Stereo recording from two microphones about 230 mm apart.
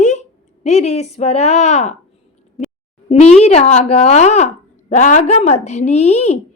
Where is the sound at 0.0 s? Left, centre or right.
Left.